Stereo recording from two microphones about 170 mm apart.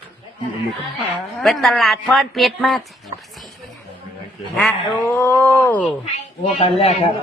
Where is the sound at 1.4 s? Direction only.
Centre (ahead or behind).